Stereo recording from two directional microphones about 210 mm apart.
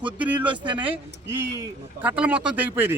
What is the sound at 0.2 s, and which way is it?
Speech, 5° right (ahead or behind).